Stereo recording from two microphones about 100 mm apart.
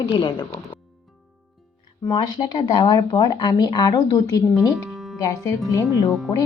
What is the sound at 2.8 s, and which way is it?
A woman's voice, 45° left (ahead or behind).